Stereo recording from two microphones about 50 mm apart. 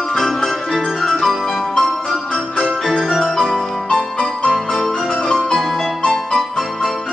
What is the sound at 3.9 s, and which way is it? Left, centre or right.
Music, centre.